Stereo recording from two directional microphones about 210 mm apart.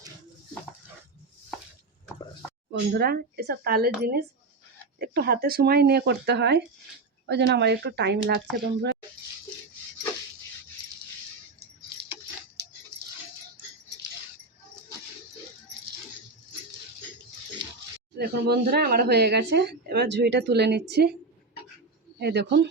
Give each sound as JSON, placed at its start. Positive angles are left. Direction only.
{"t": 2.9, "sound": "speech", "side_deg": -50}
{"t": 18.2, "sound": "speech", "side_deg": -50}
{"t": 22.2, "sound": "speech", "side_deg": -50}